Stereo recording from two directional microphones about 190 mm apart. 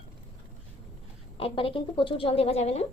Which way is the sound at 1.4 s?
30° left (ahead or behind).